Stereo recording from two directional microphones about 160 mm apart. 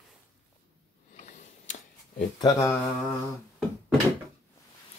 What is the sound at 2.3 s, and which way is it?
Speech, 20° left (ahead or behind).